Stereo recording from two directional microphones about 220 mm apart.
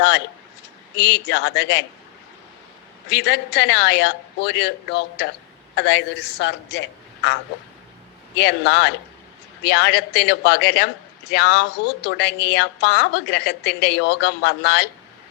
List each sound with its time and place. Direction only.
0.9 s a woman's voice: 50° left (ahead or behind)
3.1 s a woman's voice: 50° left (ahead or behind)
8.4 s a woman's voice: 50° left (ahead or behind)